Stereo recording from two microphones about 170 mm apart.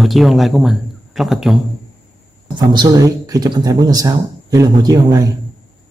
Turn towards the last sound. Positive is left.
turn(degrees=-20)  # may be behind; listen again after turning